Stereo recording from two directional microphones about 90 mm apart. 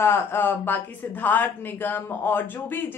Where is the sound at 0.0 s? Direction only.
25° left (ahead or behind).